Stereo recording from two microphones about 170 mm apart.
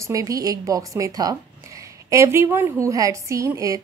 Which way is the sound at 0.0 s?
20° right (ahead or behind).